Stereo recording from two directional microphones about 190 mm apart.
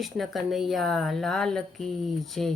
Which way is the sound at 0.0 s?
Centre (ahead or behind).